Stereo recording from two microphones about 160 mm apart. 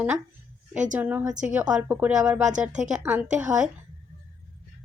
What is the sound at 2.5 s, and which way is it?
Speech, 50° right (ahead or behind).